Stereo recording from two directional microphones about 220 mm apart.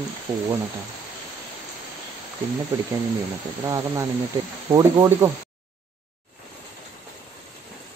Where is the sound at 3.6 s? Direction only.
15° right (ahead or behind).